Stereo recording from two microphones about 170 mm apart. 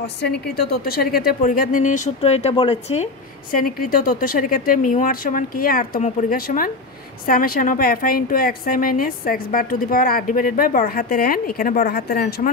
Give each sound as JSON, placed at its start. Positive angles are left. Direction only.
{"t": 0.0, "sound": "a woman's voice", "side_deg": 75}
{"t": 3.5, "sound": "a woman's voice", "side_deg": 55}